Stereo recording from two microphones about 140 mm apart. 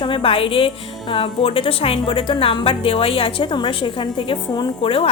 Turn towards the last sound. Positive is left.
turn(degrees=40)  # may be behind; listen again after turning